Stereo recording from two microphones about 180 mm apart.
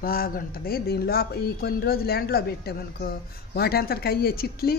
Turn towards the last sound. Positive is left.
turn(degrees=55)  # may be behind; listen again after turning